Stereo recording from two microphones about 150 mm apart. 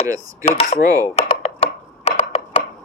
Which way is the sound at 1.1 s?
40° left (ahead or behind).